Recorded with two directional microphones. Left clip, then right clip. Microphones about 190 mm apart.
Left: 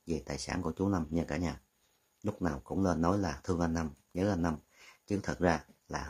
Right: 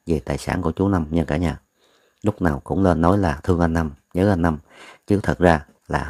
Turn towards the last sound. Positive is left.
turn(degrees=-40)  # may be behind; listen again after turning